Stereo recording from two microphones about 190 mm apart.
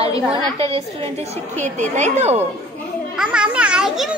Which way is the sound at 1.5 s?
40° right (ahead or behind).